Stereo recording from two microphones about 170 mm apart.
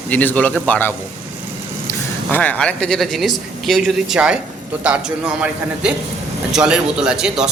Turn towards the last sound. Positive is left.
turn(degrees=-5)  # may be behind; listen again after turning